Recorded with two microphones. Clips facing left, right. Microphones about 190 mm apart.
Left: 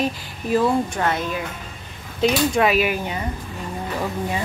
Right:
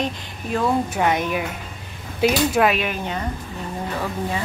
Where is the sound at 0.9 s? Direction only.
15° right (ahead or behind).